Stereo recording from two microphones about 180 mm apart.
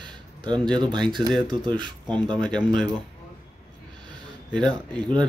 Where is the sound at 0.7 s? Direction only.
25° right (ahead or behind).